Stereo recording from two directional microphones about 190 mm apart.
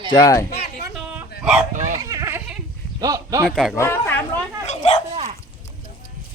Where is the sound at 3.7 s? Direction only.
10° left (ahead or behind).